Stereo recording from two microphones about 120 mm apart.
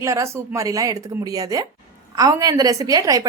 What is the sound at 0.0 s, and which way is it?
A woman's voice, 25° right (ahead or behind).